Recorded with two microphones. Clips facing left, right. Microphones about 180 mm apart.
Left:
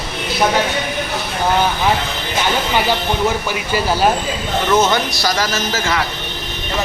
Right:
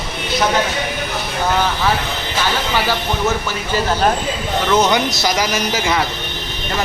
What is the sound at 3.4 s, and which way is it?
Speech, 10° left (ahead or behind).